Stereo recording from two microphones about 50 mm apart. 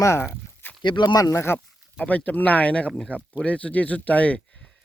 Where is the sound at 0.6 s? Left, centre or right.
Left.